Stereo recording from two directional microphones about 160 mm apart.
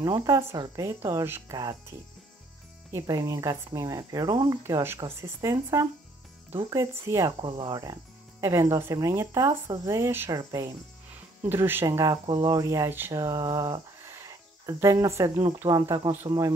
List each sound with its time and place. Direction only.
0.0 s speech: 20° right (ahead or behind)
2.9 s speech: 20° right (ahead or behind)
7.3 s speech: 30° right (ahead or behind)